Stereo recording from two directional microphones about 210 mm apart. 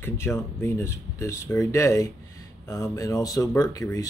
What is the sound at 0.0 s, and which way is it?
Speech, 10° left (ahead or behind).